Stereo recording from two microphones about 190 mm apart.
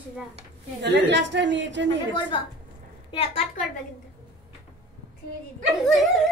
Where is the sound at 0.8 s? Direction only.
65° right (ahead or behind).